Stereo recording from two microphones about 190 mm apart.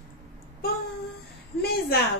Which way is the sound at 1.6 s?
55° left (ahead or behind).